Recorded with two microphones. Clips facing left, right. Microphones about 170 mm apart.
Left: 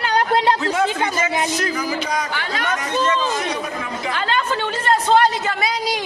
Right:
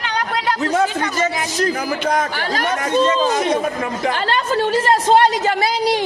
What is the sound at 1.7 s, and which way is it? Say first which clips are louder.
Speech: right 3 dB; 55° right (ahead or behind).